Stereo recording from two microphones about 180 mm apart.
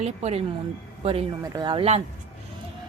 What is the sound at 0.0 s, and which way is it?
Speech, 35° right (ahead or behind).